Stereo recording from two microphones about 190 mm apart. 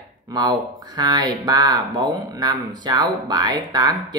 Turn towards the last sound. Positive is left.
turn(degrees=-20)  # may be behind; listen again after turning